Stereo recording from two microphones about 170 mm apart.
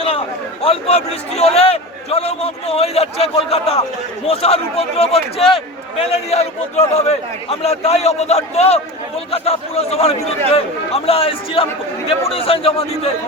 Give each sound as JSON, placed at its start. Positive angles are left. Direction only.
{"t": 0.0, "sound": "a man's voice", "side_deg": 35}